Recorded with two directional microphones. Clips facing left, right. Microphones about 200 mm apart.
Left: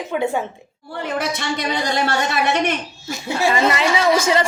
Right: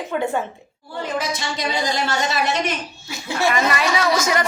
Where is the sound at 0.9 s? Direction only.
60° left (ahead or behind).